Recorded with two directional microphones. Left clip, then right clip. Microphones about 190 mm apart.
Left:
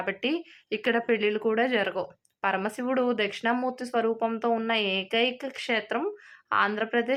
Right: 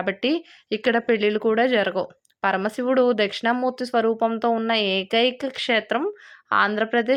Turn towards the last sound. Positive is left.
turn(degrees=-25)  # may be behind; listen again after turning